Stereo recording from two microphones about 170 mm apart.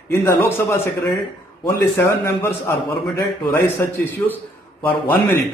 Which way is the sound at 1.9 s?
15° left (ahead or behind).